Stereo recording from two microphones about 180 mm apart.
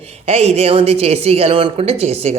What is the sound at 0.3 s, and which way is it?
Speech, 35° right (ahead or behind).